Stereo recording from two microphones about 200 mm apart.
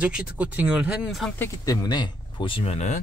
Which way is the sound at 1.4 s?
20° left (ahead or behind).